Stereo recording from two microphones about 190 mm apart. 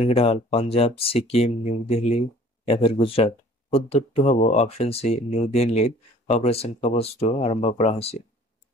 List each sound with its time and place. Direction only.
0.0 s speech: 30° left (ahead or behind)